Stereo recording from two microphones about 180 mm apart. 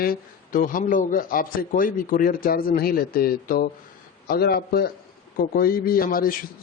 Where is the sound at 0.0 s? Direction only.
50° left (ahead or behind).